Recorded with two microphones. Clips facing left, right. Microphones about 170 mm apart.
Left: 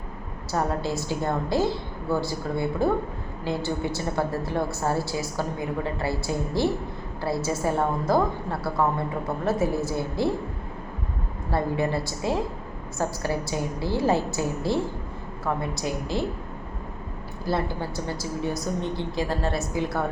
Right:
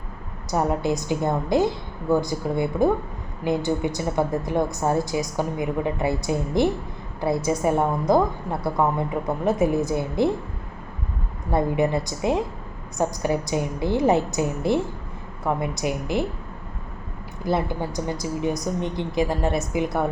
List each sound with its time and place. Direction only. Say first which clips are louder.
0.5 s a woman's voice: right 4 dB; 20° right (ahead or behind)
11.5 s a woman's voice: right 4 dB; 20° right (ahead or behind)
17.4 s a woman's voice: right 3 dB; 20° right (ahead or behind)